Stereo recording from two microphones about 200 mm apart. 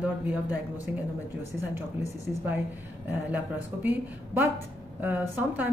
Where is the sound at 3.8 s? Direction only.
10° right (ahead or behind).